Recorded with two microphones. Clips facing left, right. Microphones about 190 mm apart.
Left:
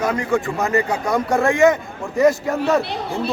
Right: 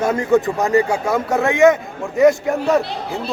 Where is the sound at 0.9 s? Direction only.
5° right (ahead or behind).